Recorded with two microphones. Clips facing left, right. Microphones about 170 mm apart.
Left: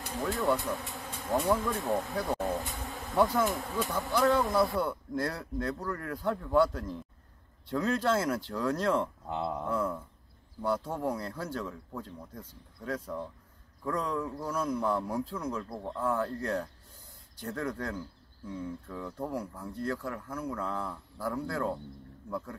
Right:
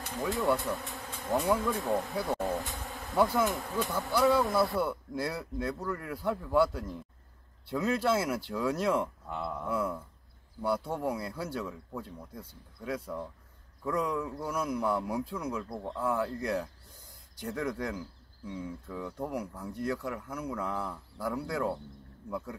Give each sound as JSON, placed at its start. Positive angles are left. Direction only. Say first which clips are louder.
{"t": 0.4, "sound": "speech", "louder": "even", "side_deg": 0}
{"t": 9.3, "sound": "a sound", "louder": "left 3 dB", "side_deg": 30}
{"t": 9.7, "sound": "speech", "louder": "left 1 dB", "side_deg": -10}